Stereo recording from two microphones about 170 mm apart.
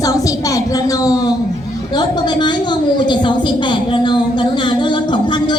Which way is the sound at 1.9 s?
25° left (ahead or behind).